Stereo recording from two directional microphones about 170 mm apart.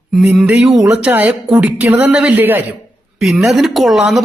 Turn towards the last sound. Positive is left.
turn(degrees=0)  # may be behind; listen again after turning